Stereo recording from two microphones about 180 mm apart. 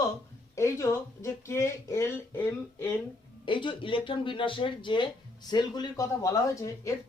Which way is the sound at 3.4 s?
25° left (ahead or behind).